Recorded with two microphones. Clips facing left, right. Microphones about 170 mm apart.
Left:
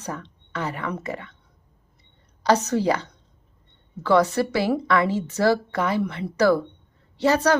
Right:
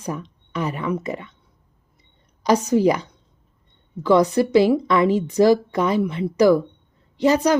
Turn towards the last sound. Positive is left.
turn(degrees=-15)  # may be behind; listen again after turning